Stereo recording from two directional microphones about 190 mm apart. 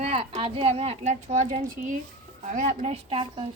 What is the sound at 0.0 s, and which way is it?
A child's voice, 30° right (ahead or behind).